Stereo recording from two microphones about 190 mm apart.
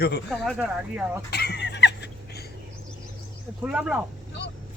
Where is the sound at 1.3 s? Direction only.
60° left (ahead or behind).